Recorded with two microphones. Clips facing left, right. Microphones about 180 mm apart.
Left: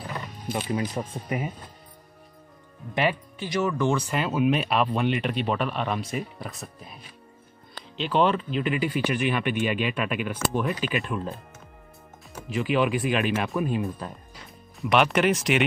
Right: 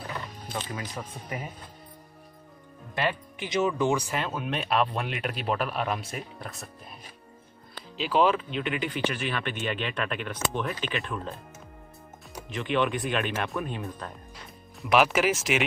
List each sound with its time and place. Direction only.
0.1 s music: 15° left (ahead or behind)
0.7 s speech: 25° left (ahead or behind)
2.9 s speech: 15° left (ahead or behind)
3.3 s speech: 20° right (ahead or behind)
4.1 s speech: 5° left (ahead or behind)
8.0 s speech: centre (ahead or behind)
12.5 s speech: 5° left (ahead or behind)